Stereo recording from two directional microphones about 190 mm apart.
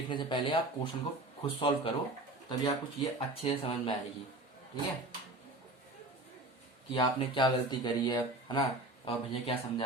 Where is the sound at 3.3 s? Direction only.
30° left (ahead or behind).